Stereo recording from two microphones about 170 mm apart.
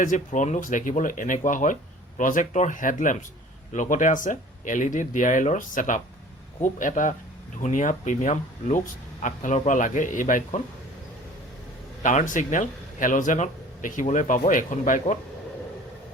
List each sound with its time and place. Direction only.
0.0 s speech: 50° left (ahead or behind)
12.0 s speech: 50° left (ahead or behind)